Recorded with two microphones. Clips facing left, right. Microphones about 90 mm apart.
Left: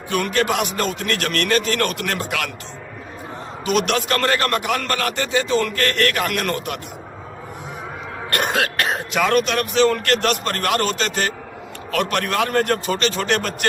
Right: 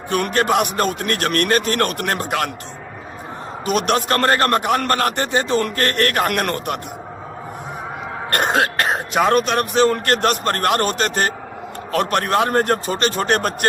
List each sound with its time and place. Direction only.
0.1 s a man's voice: 45° right (ahead or behind)
3.7 s a man's voice: 45° right (ahead or behind)
8.3 s a man's voice: 35° right (ahead or behind)